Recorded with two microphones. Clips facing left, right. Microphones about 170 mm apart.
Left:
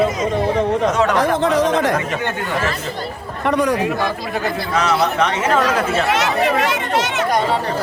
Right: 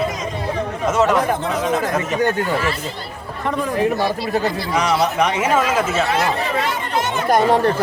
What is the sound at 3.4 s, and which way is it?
Speech, 80° left.